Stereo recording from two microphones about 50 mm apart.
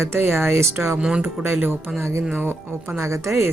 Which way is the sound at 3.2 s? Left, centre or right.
Right.